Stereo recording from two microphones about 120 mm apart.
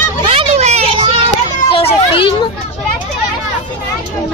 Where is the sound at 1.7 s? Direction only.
50° left (ahead or behind).